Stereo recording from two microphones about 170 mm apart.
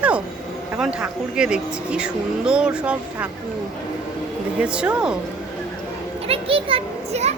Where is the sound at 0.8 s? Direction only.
5° right (ahead or behind).